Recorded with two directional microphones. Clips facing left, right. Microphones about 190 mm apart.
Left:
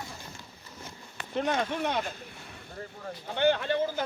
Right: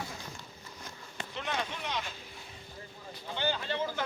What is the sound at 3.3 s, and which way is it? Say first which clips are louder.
Speech: left 8 dB; 60° left (ahead or behind).